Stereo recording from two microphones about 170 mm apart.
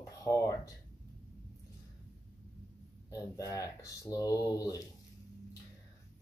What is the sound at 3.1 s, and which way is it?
Speech, 20° left (ahead or behind).